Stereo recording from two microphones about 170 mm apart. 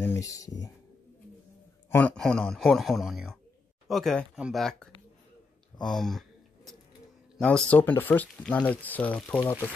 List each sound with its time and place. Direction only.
0.0 s speech: 15° left (ahead or behind)
1.9 s speech: 10° left (ahead or behind)
5.8 s a sound: 5° left (ahead or behind)
7.3 s speech: 5° left (ahead or behind)